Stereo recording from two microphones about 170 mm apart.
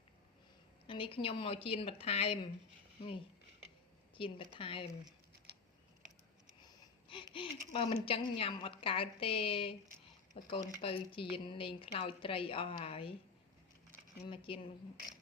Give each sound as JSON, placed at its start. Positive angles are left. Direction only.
{"t": 0.9, "sound": "a woman's voice", "side_deg": 30}
{"t": 4.1, "sound": "a woman's voice", "side_deg": 30}
{"t": 6.6, "sound": "wheeze", "side_deg": 25}
{"t": 7.3, "sound": "a woman's voice", "side_deg": 30}
{"t": 14.3, "sound": "a woman's voice", "side_deg": 30}